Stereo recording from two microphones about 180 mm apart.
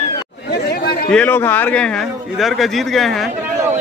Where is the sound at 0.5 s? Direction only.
65° left (ahead or behind).